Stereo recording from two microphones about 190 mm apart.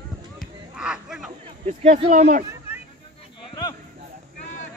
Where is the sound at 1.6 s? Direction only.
35° right (ahead or behind).